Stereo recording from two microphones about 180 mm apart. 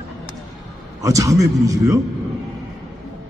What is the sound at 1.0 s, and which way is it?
A man's voice, 20° right (ahead or behind).